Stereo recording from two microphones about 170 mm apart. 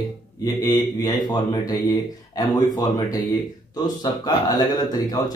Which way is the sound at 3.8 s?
25° left (ahead or behind).